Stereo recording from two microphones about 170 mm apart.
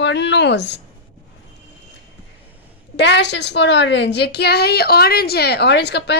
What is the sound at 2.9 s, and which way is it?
A woman's voice, 90° left.